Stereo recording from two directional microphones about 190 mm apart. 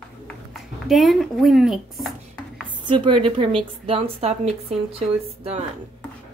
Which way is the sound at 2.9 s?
25° right (ahead or behind).